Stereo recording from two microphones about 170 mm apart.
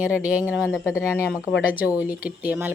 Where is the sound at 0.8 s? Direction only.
15° left (ahead or behind).